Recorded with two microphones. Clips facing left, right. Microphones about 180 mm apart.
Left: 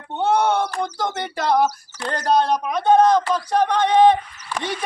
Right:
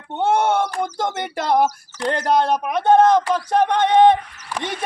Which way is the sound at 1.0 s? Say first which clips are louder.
Right 1 dB; 50° right (ahead or behind).